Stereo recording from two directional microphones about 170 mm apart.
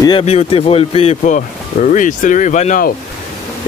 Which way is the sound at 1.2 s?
50° left (ahead or behind).